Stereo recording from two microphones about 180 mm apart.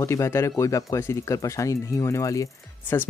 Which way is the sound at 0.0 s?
15° left (ahead or behind).